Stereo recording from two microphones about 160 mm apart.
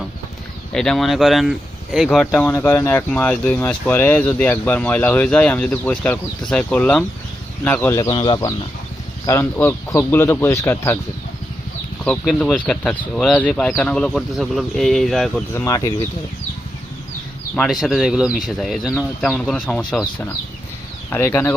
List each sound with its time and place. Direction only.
0.7 s speech: 5° left (ahead or behind)
2.4 s speech: 15° left (ahead or behind)
7.9 s speech: 25° left (ahead or behind)
12.0 s speech: 5° left (ahead or behind)
15.5 s speech: 20° left (ahead or behind)
17.5 s speech: centre (ahead or behind); by 21.5 s 15° left (ahead or behind)